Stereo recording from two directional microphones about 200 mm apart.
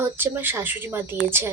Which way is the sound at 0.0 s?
10° right (ahead or behind).